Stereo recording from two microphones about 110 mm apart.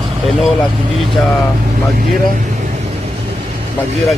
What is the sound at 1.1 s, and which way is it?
Speech, centre (ahead or behind).